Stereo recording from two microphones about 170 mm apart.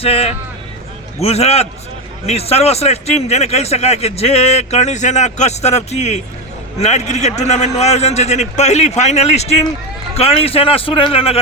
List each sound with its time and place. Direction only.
0.0 s a man's voice: 35° left (ahead or behind)